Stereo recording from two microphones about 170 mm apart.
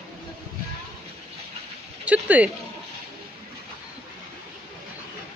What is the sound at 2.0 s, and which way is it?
Speech, 10° right (ahead or behind).